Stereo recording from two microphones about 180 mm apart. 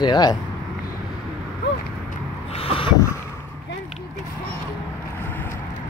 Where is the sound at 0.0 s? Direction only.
20° left (ahead or behind).